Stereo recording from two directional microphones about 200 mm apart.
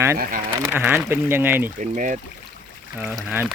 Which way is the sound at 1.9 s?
40° right (ahead or behind).